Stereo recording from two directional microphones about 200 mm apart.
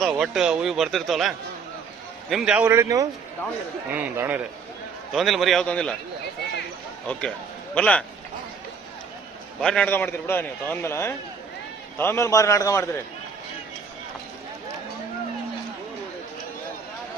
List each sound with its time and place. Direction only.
0.0 s speech: centre (ahead or behind)
7.1 s speech: 5° left (ahead or behind)
9.6 s a man's voice: 5° left (ahead or behind)